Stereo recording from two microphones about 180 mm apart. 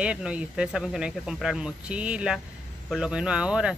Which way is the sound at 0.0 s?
5° right (ahead or behind).